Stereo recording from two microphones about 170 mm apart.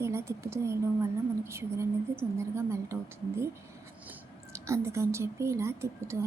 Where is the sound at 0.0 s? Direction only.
15° right (ahead or behind).